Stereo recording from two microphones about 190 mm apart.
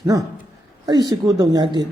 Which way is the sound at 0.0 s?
15° right (ahead or behind).